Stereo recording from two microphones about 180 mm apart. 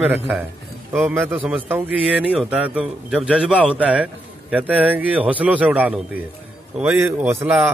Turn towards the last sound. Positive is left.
turn(degrees=-10)  # may be behind; listen again after turning